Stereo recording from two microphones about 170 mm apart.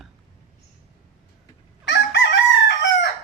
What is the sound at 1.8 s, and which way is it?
Chicken, 90° left.